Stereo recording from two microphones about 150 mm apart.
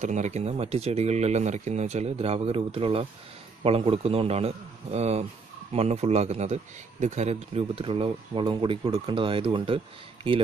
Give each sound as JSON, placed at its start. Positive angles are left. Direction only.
{"t": 0.0, "sound": "a man's voice", "side_deg": -55}